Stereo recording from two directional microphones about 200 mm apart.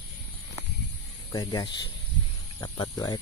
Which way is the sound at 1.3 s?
20° left (ahead or behind).